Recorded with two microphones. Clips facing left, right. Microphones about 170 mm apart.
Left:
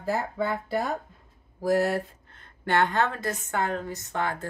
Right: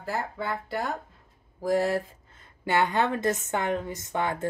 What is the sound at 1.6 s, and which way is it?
Speech, 5° left (ahead or behind).